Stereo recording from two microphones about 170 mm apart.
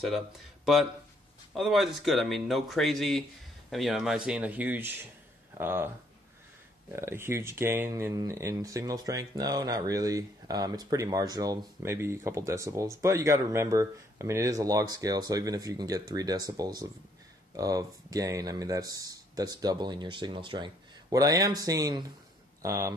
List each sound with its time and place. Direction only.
1.5 s speech: centre (ahead or behind)
7.0 s speech: 15° right (ahead or behind)